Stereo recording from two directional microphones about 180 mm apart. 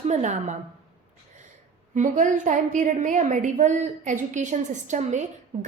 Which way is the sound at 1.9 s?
45° right (ahead or behind).